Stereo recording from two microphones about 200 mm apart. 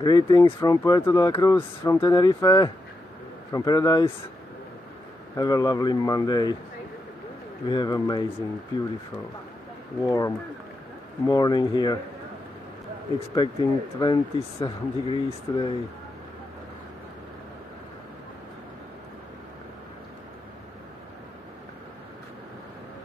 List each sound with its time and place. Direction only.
0.0 s speech: 20° left (ahead or behind)
5.3 s speech: 20° left (ahead or behind)
7.6 s speech: 20° left (ahead or behind)
10.0 s speech: 20° left (ahead or behind)
13.3 s speech: 20° left (ahead or behind)